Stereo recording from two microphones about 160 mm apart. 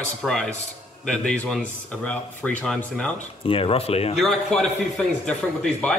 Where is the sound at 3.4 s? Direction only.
35° left (ahead or behind).